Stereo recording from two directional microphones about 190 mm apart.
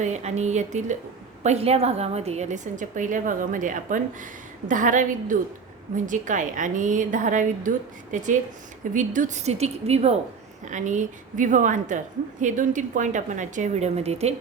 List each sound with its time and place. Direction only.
0.0 s a woman's voice: 35° right (ahead or behind)
8.8 s a woman's voice: 40° right (ahead or behind)